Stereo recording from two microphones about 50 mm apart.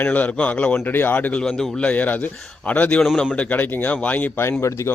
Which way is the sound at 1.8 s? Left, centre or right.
Left.